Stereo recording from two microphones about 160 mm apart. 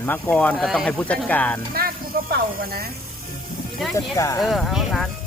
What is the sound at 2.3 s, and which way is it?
Speech, 70° right (ahead or behind).